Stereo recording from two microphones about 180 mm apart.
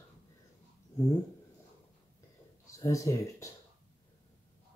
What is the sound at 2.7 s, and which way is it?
Speech, 15° left (ahead or behind).